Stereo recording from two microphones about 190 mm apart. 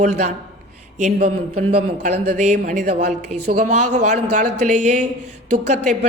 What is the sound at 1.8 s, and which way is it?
Speech, 35° right (ahead or behind).